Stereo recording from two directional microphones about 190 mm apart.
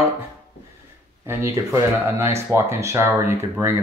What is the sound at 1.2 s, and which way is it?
Speech, 15° right (ahead or behind).